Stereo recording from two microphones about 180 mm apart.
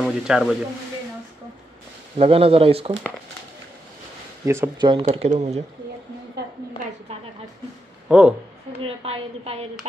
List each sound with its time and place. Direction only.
0.0 s speech: centre (ahead or behind)
2.1 s a woman's voice: 30° right (ahead or behind)
4.5 s speech: 15° right (ahead or behind)
5.0 s a woman's voice: 40° right (ahead or behind)
8.1 s a woman's voice: 5° right (ahead or behind)
8.7 s a woman's voice: 35° right (ahead or behind)